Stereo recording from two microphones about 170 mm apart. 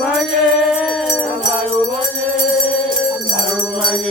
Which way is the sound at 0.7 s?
Centre (ahead or behind).